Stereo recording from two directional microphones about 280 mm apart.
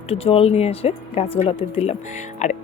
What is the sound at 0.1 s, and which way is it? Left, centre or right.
Speech, left.